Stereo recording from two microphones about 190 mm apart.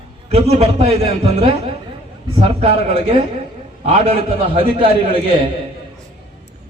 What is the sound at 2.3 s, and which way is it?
Speech, 25° right (ahead or behind).